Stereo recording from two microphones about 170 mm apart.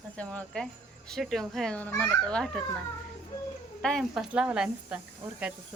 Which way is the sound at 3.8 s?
Centre (ahead or behind).